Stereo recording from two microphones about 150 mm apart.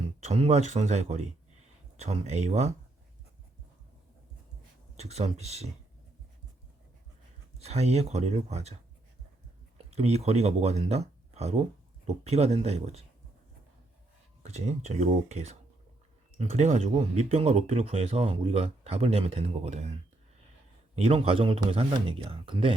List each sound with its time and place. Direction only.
0.2 s speech: 45° right (ahead or behind)
4.9 s speech: 45° right (ahead or behind)
7.6 s speech: 45° right (ahead or behind)
9.7 s speech: 45° right (ahead or behind)
14.4 s a man's voice: 50° right (ahead or behind)